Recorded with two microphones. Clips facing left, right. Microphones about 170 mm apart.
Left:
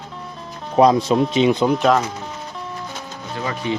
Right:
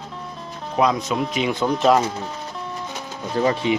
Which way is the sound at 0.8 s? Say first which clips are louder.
Left 6 dB; 35° left (ahead or behind).